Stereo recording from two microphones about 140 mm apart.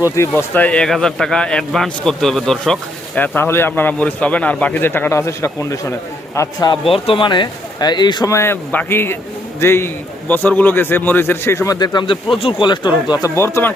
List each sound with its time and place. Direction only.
0.2 s speech: 15° left (ahead or behind)
3.2 s a man's voice: 15° left (ahead or behind)
6.8 s speech: 40° left (ahead or behind)
8.3 s a man's voice: 20° left (ahead or behind)